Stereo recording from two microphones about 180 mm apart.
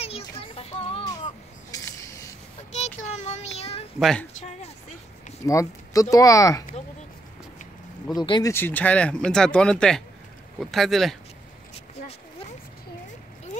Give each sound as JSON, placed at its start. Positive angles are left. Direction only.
{"t": 0.4, "sound": "child singing", "side_deg": 35}
{"t": 1.7, "sound": "a sound", "side_deg": 15}
{"t": 2.7, "sound": "child singing", "side_deg": 40}
{"t": 4.0, "sound": "speech", "side_deg": 5}
{"t": 5.5, "sound": "speech", "side_deg": 20}
{"t": 8.2, "sound": "speech", "side_deg": 20}